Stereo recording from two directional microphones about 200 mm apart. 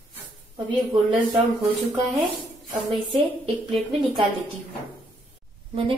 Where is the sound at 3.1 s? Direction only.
25° right (ahead or behind).